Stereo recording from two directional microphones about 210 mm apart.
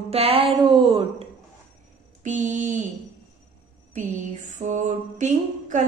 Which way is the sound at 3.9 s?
35° right (ahead or behind).